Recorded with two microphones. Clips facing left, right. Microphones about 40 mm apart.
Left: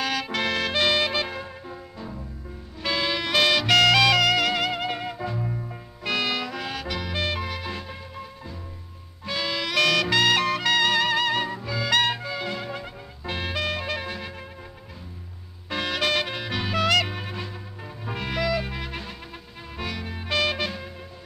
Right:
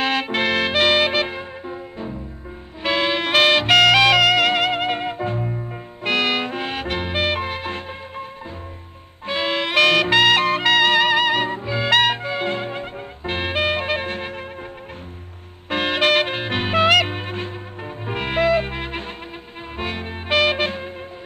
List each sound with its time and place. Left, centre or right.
0.0 s music: right
15.7 s music: right